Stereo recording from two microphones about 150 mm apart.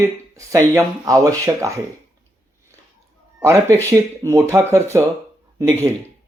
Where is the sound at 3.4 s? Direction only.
15° right (ahead or behind).